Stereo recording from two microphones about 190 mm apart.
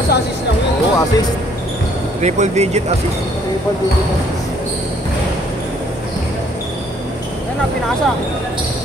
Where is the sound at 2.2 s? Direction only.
35° right (ahead or behind).